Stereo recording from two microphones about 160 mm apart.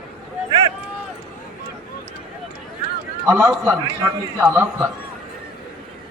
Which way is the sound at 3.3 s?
Centre (ahead or behind).